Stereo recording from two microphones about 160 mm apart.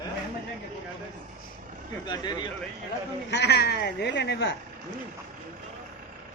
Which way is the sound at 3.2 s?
90° left.